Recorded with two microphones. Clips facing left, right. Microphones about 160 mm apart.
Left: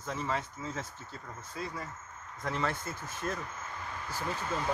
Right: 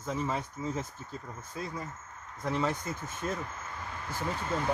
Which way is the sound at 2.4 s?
15° right (ahead or behind).